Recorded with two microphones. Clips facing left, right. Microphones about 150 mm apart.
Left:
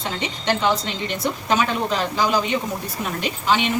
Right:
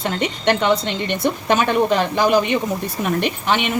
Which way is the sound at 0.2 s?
60° right (ahead or behind).